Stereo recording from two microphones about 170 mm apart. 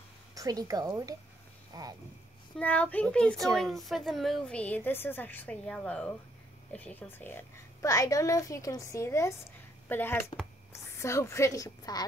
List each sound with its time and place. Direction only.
0.3 s a woman's voice: 20° right (ahead or behind)
2.6 s a woman's voice: 10° left (ahead or behind)